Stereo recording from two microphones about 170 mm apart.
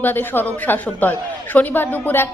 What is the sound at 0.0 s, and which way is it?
A woman's voice, 10° left (ahead or behind).